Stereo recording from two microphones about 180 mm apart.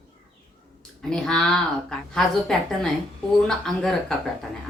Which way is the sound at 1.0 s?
5° left (ahead or behind).